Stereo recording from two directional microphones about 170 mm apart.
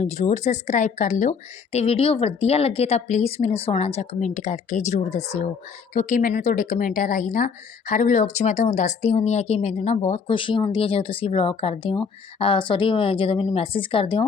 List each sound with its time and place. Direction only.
0.0 s a woman's voice: 40° left (ahead or behind)